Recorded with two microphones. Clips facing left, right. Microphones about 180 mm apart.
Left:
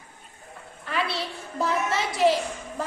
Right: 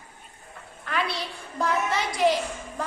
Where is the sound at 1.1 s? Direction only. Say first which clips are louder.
Left 2 dB; 5° left (ahead or behind).